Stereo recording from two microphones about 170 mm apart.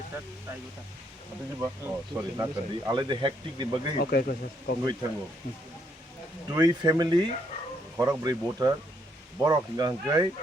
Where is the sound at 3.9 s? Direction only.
65° left (ahead or behind).